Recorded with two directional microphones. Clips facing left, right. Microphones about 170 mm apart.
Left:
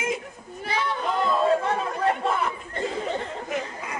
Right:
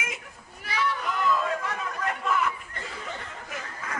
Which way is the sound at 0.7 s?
30° left (ahead or behind).